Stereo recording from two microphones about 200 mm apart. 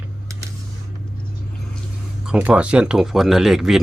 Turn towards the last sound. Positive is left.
turn(degrees=0)  # may be behind; listen again after turning